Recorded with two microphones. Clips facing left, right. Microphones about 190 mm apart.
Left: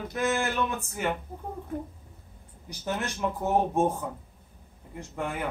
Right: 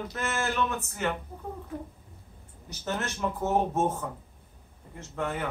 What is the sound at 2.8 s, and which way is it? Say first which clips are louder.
Speech: left 1 dB; 10° left (ahead or behind).